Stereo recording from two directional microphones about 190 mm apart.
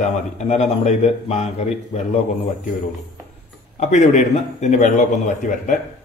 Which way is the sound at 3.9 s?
40° left (ahead or behind).